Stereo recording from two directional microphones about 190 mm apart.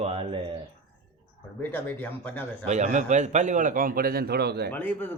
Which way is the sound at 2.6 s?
40° right (ahead or behind).